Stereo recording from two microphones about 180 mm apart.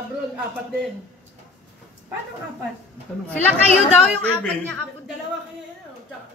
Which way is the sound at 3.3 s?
10° left (ahead or behind).